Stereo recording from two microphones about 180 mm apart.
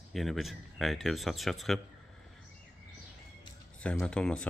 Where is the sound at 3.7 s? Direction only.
5° left (ahead or behind).